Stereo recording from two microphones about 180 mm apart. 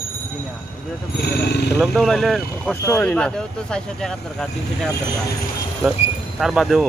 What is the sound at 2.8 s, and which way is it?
Speech, 15° left (ahead or behind).